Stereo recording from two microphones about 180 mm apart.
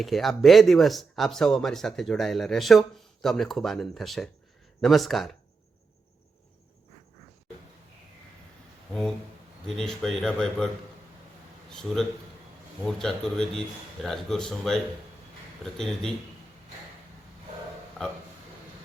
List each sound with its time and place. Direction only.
0.0 s speech: centre (ahead or behind)
8.9 s a sound: 5° left (ahead or behind)
9.6 s speech: centre (ahead or behind)
11.7 s speech: 5° left (ahead or behind)